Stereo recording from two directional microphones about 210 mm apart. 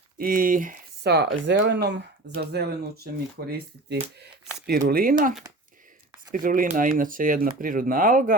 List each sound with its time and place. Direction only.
0.2 s speech: 40° right (ahead or behind)
6.3 s speech: 40° right (ahead or behind)